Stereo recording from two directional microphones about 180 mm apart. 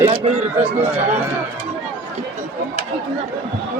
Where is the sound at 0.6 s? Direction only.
10° right (ahead or behind).